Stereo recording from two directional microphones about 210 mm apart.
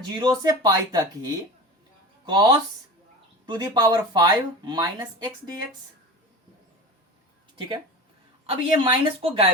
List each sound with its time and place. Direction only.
0.1 s speech: 20° right (ahead or behind)
8.4 s speech: 25° right (ahead or behind)